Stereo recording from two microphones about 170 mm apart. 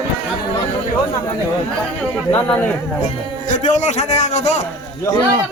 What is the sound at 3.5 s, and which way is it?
A man's voice, 45° left (ahead or behind).